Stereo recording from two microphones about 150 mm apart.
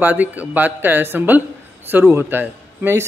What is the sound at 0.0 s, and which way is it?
Speech, 10° right (ahead or behind).